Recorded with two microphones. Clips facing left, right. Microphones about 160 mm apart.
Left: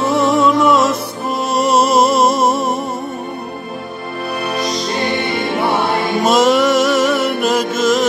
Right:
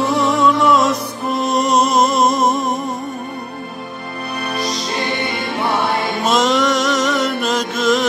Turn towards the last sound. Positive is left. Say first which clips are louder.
# left 2 dB
turn(degrees=0)  # may be behind; listen again after turning